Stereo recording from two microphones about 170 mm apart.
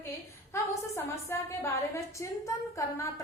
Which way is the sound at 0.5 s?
15° left (ahead or behind).